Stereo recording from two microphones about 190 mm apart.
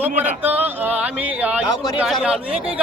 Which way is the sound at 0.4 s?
10° right (ahead or behind).